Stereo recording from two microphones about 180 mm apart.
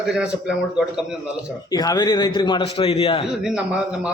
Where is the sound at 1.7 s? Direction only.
20° left (ahead or behind).